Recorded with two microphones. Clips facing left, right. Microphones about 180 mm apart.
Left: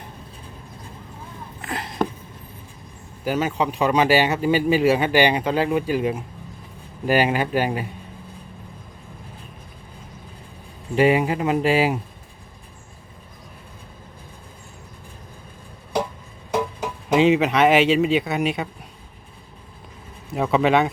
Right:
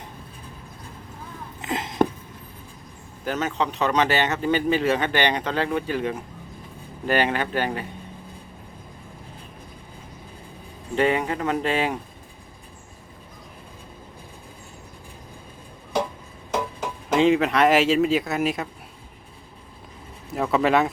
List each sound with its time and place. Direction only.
1.6 s a sound: 20° right (ahead or behind)
3.2 s speech: 10° left (ahead or behind)
10.9 s speech: 10° left (ahead or behind)
17.1 s speech: 5° left (ahead or behind)
20.3 s speech: centre (ahead or behind)